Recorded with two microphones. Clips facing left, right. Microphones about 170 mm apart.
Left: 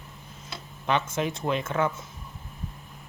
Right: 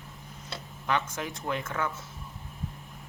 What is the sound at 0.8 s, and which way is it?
Speech, 25° left (ahead or behind).